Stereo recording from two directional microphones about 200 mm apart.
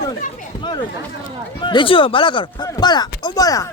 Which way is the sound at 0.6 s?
20° left (ahead or behind).